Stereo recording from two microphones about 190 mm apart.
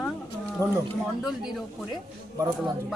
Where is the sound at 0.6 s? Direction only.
15° right (ahead or behind).